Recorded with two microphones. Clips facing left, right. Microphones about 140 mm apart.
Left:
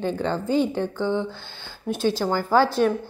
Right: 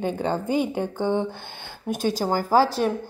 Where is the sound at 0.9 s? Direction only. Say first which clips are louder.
Right 1 dB; 50° right (ahead or behind); by 2.9 s 35° right (ahead or behind).